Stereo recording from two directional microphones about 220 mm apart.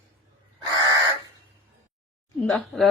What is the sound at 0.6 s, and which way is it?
Bird, 20° right (ahead or behind).